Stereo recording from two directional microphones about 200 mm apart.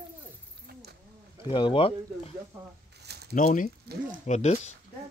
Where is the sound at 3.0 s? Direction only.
55° right (ahead or behind).